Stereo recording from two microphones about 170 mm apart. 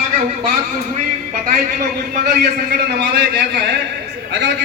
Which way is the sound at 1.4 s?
55° right (ahead or behind).